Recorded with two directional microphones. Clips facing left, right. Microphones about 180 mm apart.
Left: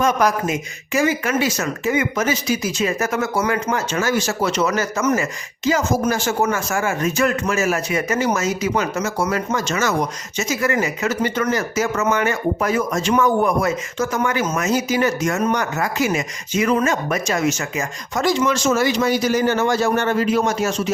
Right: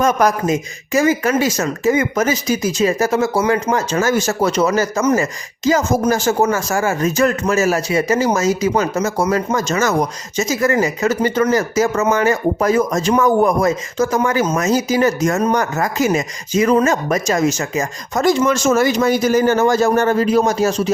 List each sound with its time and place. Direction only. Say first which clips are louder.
0.0 s speech: right 3 dB; 45° right (ahead or behind)